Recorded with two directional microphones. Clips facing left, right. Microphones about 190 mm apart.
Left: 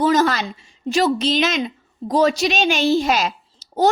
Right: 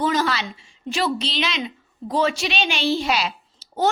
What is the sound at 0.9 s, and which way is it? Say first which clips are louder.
A woman's voice: left 6 dB; 40° left (ahead or behind).